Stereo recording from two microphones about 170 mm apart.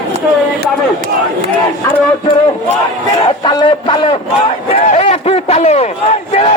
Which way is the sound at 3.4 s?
25° left (ahead or behind).